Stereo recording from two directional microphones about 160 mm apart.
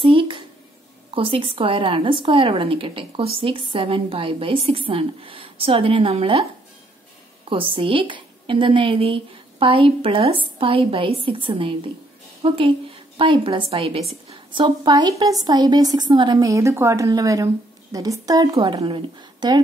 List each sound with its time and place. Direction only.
0.0 s a sound: 35° right (ahead or behind)
1.1 s a woman's voice: 35° right (ahead or behind)
7.4 s a woman's voice: 35° right (ahead or behind)